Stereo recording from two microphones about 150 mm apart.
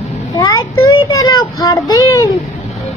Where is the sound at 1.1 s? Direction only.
20° left (ahead or behind).